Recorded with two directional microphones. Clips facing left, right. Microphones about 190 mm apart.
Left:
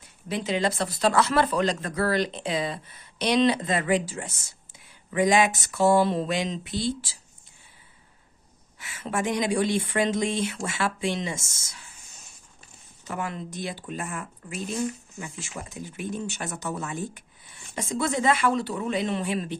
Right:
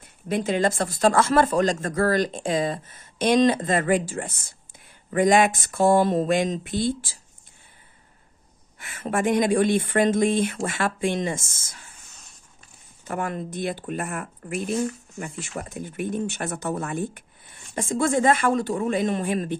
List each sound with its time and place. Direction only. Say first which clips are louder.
0.0 s speech: right 5 dB; 50° right (ahead or behind)
8.7 s speech: right 4 dB; 50° right (ahead or behind)
13.1 s speech: right 4 dB; 50° right (ahead or behind)